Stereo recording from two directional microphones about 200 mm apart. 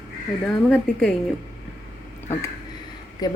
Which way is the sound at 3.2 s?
20° left (ahead or behind).